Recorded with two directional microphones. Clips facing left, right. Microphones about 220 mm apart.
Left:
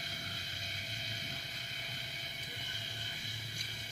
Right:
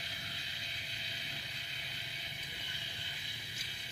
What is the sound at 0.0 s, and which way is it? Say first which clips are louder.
Vehicle: left 3 dB; 45° left (ahead or behind).